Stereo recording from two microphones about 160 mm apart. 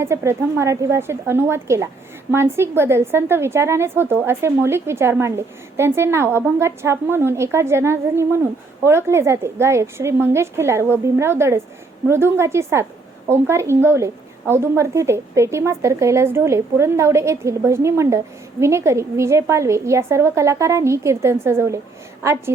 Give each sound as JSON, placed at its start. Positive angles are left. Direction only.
{"t": 0.0, "sound": "a woman's voice", "side_deg": -15}